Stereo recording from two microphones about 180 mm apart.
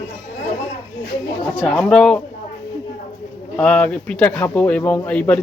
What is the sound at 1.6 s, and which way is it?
Speech, 5° left (ahead or behind).